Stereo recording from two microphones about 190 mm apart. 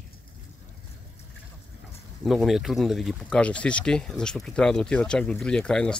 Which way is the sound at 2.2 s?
Centre (ahead or behind).